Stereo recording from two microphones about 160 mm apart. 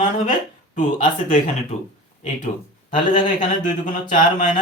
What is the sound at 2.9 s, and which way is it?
Speech, 55° left (ahead or behind).